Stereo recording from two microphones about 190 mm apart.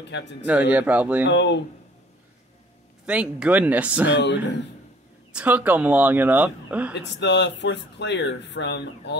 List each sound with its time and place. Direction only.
0.1 s speech: 65° left (ahead or behind)
0.5 s speech: 5° right (ahead or behind)
1.2 s speech: 65° left (ahead or behind)
3.1 s speech: 5° right (ahead or behind)
4.1 s speech: 70° left (ahead or behind)
5.3 s speech: 10° right (ahead or behind)
6.9 s speech: 65° left (ahead or behind)